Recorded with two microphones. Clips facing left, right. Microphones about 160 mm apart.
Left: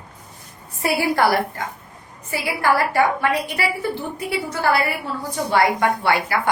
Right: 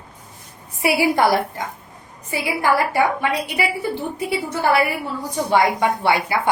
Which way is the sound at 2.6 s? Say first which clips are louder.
Even; 15° right (ahead or behind).